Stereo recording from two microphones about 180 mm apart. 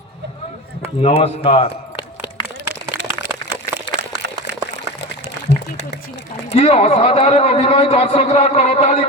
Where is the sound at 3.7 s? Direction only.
20° right (ahead or behind).